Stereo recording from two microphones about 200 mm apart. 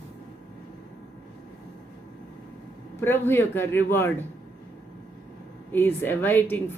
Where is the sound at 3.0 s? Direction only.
10° left (ahead or behind).